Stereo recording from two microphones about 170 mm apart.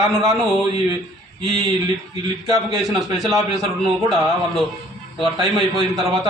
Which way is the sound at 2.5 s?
Centre (ahead or behind).